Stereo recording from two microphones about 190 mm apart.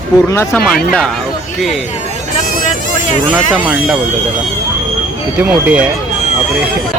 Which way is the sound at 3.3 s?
Centre (ahead or behind).